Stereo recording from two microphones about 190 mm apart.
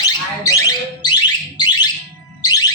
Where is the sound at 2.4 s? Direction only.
20° left (ahead or behind).